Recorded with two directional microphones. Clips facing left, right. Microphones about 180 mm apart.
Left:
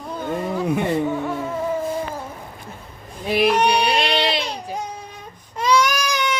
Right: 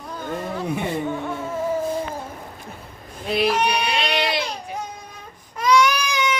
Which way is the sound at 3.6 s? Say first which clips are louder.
Left 4 dB; 30° left (ahead or behind).